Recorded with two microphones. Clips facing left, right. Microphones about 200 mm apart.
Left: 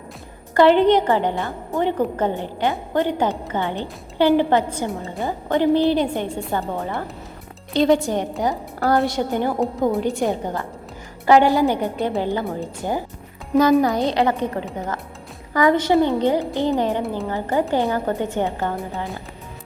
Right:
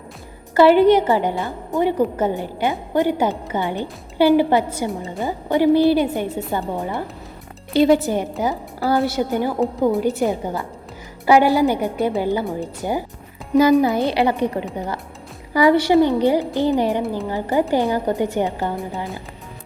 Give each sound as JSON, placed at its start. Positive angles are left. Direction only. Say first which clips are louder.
{"t": 0.5, "sound": "a woman's voice", "louder": "right 2 dB", "side_deg": -10}
{"t": 13.5, "sound": "a woman's voice", "louder": "right 2 dB", "side_deg": 0}
{"t": 14.1, "sound": "a woman's voice", "louder": "right 1 dB", "side_deg": -10}